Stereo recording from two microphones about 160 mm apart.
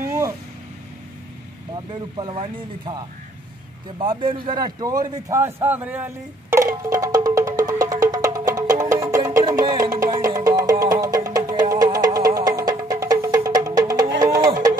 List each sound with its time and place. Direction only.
1.9 s speech: 30° right (ahead or behind)
5.4 s music: 10° right (ahead or behind)